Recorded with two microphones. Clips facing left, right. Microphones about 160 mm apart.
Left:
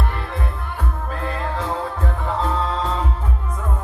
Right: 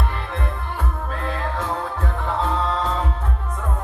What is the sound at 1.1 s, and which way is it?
Music, centre (ahead or behind).